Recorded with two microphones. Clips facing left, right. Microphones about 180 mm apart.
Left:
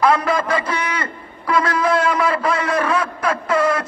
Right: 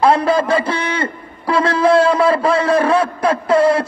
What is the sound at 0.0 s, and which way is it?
A man's voice, 30° right (ahead or behind).